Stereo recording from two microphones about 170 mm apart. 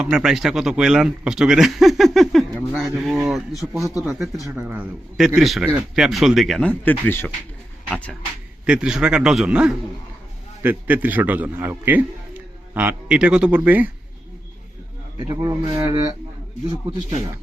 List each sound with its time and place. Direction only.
0.0 s a man's voice: 5° right (ahead or behind); by 7.3 s 10° left (ahead or behind)
8.6 s a man's voice: 5° right (ahead or behind)
15.3 s speech: 25° right (ahead or behind)